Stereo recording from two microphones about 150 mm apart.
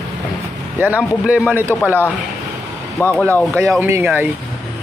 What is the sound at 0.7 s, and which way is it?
Speech, 10° right (ahead or behind).